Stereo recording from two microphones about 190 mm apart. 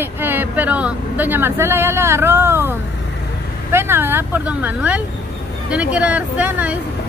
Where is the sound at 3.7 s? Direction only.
10° right (ahead or behind).